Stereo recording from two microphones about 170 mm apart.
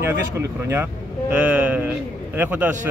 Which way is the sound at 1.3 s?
10° right (ahead or behind).